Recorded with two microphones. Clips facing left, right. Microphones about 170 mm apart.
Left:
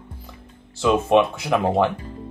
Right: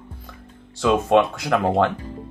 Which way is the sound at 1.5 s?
10° left (ahead or behind).